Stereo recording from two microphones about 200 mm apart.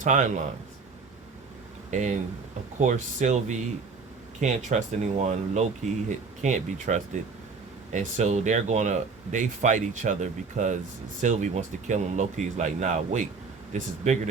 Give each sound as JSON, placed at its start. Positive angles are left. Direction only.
{"t": 0.0, "sound": "speech", "side_deg": -40}
{"t": 1.9, "sound": "speech", "side_deg": -40}